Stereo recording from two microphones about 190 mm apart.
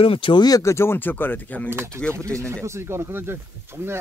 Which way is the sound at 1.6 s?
15° right (ahead or behind).